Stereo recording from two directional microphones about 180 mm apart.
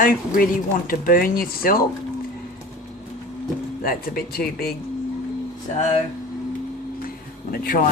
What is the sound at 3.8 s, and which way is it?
Speech, 55° left (ahead or behind).